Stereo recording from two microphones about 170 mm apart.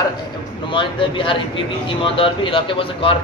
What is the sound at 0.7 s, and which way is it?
A man's voice, 30° left (ahead or behind).